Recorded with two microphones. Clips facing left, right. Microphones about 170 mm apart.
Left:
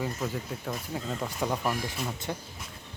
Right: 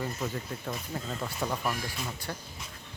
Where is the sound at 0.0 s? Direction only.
Centre (ahead or behind).